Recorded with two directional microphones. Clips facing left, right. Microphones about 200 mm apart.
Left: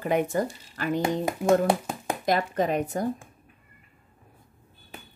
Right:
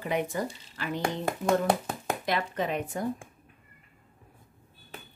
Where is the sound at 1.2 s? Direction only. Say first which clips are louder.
Left 3 dB; 15° left (ahead or behind).